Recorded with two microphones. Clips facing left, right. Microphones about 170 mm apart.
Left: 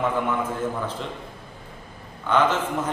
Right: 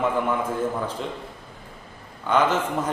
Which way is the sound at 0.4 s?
10° right (ahead or behind).